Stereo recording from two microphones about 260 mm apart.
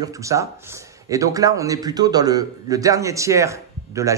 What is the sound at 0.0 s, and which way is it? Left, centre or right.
A man's voice, centre.